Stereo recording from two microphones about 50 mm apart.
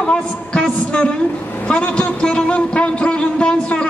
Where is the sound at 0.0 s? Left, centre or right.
Centre.